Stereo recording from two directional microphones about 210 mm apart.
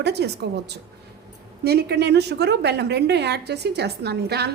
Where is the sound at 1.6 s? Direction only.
50° right (ahead or behind).